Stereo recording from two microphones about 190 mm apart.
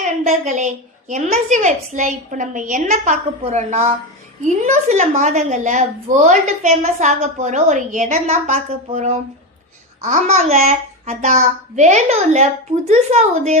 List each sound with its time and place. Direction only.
0.3 s a woman's voice: 40° right (ahead or behind)